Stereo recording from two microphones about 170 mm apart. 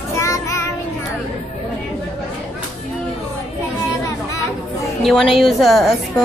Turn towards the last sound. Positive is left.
turn(degrees=0)  # may be behind; listen again after turning